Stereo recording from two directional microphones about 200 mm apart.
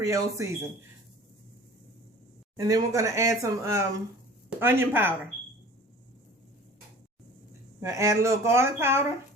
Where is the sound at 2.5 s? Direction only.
15° right (ahead or behind).